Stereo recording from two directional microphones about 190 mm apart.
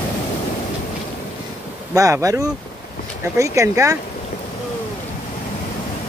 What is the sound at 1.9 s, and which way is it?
Speech, 15° right (ahead or behind).